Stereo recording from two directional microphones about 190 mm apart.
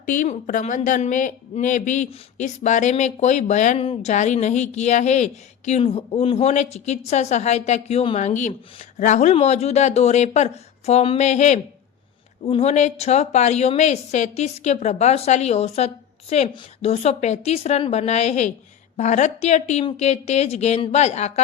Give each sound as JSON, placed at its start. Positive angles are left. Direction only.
{"t": 0.0, "sound": "a woman's voice", "side_deg": 45}